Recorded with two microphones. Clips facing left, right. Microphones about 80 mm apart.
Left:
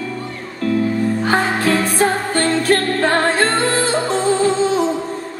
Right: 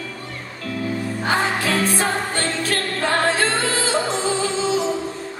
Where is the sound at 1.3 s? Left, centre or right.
Left.